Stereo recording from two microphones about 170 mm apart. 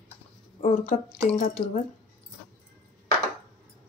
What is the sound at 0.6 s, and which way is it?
Speech, 50° left (ahead or behind).